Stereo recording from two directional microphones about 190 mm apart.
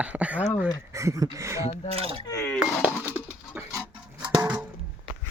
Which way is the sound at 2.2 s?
15° left (ahead or behind).